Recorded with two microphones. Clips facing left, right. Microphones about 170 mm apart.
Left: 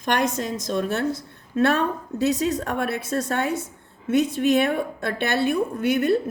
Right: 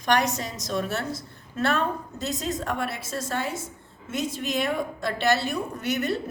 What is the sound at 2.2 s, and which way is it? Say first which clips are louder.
A woman's voice: left 8 dB; 60° left (ahead or behind).